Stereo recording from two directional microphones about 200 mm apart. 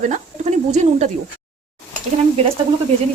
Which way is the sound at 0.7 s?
35° right (ahead or behind).